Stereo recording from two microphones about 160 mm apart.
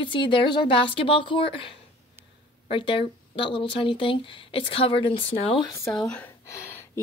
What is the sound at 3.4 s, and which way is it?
Speech, 90° left.